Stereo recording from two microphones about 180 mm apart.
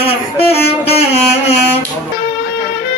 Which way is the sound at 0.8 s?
35° left (ahead or behind).